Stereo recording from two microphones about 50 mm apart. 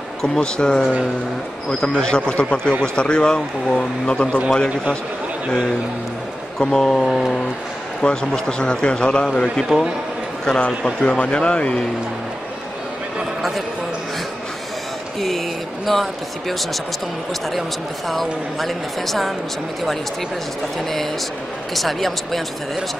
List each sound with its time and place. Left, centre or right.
0.4 s a man's voice: centre
2.0 s a man's voice: centre
6.6 s a man's voice: centre
8.0 s a man's voice: centre
9.7 s a man's voice: centre
11.0 s a man's voice: left
13.4 s a sound: centre
15.1 s speech: centre
18.0 s speech: centre
21.7 s speech: centre